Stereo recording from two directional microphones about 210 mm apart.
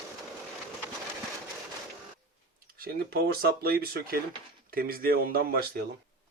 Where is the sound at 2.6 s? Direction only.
45° right (ahead or behind).